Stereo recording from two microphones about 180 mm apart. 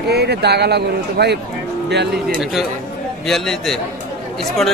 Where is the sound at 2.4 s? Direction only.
Centre (ahead or behind).